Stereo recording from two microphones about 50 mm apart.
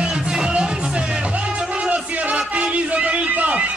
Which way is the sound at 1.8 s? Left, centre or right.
Right.